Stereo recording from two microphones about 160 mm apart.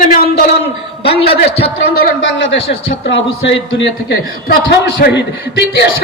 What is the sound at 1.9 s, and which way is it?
Speech, 75° left (ahead or behind).